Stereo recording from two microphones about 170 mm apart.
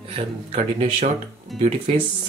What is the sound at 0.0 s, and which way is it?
Speech, 35° right (ahead or behind).